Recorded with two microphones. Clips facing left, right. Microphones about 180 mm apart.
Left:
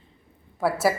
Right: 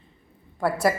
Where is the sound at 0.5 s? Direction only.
5° left (ahead or behind).